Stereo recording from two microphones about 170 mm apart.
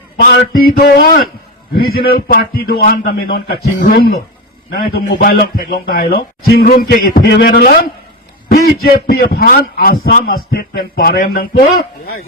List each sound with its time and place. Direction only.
0.2 s a man's voice: 55° left (ahead or behind); by 5.2 s 75° left (ahead or behind)
5.2 s a man's voice: 60° left (ahead or behind)